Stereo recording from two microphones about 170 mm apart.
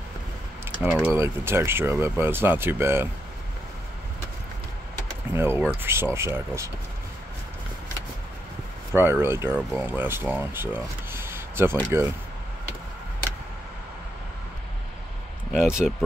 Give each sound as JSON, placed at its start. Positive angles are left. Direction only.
{"t": 0.8, "sound": "speech", "side_deg": -10}
{"t": 5.3, "sound": "speech", "side_deg": -15}
{"t": 8.9, "sound": "speech", "side_deg": -15}
{"t": 15.5, "sound": "speech", "side_deg": -5}